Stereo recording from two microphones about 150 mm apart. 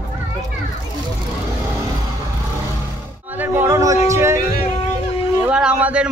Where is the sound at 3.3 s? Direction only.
15° right (ahead or behind).